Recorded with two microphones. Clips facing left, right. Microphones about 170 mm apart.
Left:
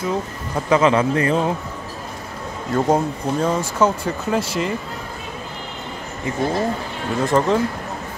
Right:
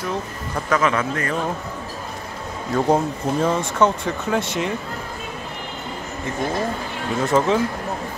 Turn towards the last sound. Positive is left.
turn(degrees=0)  # may be behind; listen again after turning